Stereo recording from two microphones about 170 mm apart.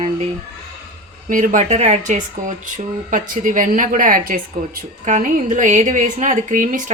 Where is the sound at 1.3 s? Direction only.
50° right (ahead or behind).